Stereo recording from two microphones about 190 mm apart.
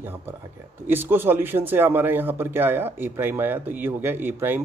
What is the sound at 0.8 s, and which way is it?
A man's voice, 10° right (ahead or behind).